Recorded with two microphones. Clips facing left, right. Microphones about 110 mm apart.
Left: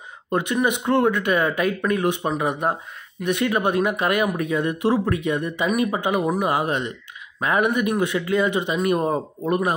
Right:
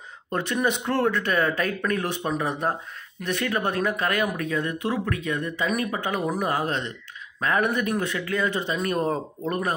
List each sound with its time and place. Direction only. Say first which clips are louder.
0.3 s speech: left 3 dB; 15° left (ahead or behind)